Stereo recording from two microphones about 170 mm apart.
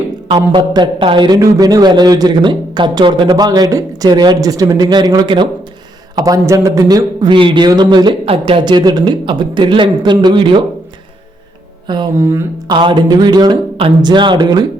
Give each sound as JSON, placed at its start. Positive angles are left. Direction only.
{"t": 0.3, "sound": "a man's voice", "side_deg": -25}
{"t": 11.9, "sound": "a man's voice", "side_deg": -25}